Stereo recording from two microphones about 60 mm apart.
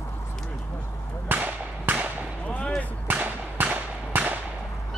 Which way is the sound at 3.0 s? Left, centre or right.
Right.